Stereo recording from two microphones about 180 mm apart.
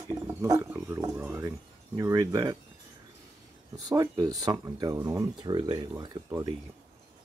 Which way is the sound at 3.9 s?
20° right (ahead or behind).